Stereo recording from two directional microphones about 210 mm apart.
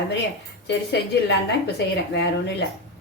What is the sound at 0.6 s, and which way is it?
Speech, 55° left (ahead or behind).